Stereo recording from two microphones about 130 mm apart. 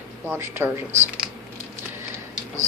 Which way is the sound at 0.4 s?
20° right (ahead or behind).